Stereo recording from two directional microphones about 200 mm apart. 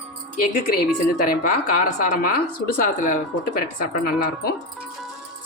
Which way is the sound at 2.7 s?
40° left (ahead or behind).